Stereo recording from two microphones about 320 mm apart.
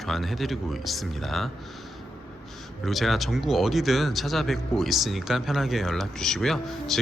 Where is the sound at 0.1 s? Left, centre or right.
Centre.